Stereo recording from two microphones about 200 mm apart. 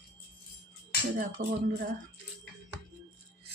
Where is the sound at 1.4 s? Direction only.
45° right (ahead or behind).